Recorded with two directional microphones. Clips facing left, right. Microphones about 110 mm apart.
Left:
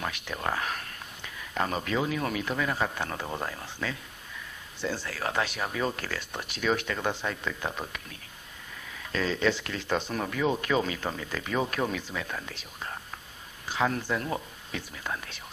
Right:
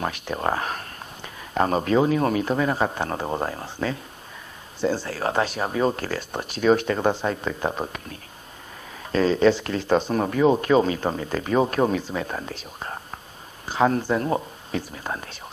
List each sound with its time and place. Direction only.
0.0 s speech: 35° right (ahead or behind)